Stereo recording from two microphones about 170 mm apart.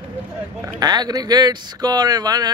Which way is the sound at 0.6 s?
25° right (ahead or behind).